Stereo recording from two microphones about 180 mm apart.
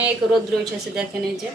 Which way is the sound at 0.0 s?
Centre (ahead or behind).